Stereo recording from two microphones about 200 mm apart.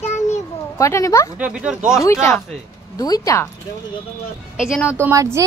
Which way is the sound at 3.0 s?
20° left (ahead or behind).